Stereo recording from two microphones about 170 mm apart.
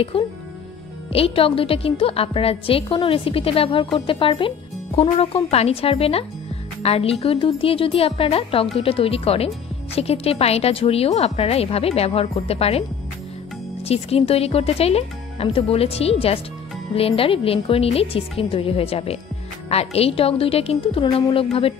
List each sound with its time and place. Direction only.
0.1 s a woman's voice: 30° left (ahead or behind)
13.8 s a woman's voice: 35° left (ahead or behind)